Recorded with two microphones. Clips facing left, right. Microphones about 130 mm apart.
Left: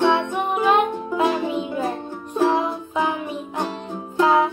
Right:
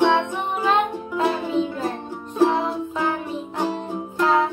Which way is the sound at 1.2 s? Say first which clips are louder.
Even; 15° left (ahead or behind).